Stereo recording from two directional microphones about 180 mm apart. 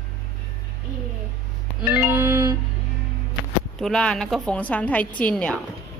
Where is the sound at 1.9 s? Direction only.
10° right (ahead or behind).